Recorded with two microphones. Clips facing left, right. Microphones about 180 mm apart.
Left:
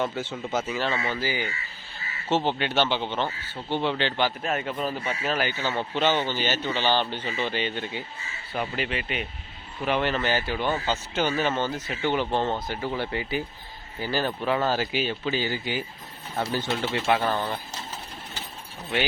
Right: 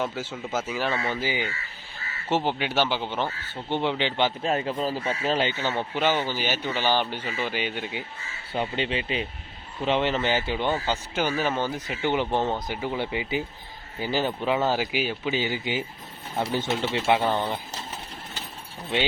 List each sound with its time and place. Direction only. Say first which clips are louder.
0.0 s speech: left 1 dB; 5° right (ahead or behind)
4.4 s speech: right 2 dB; 30° right (ahead or behind); by 8.0 s 10° right (ahead or behind)
8.5 s speech: right 2 dB; 25° right (ahead or behind)